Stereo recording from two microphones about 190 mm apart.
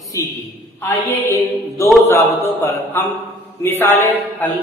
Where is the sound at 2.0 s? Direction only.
10° left (ahead or behind).